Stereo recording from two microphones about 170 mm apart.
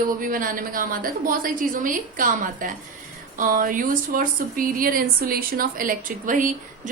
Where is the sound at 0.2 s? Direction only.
55° right (ahead or behind).